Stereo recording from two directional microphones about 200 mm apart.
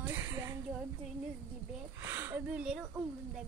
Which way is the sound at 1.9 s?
10° right (ahead or behind).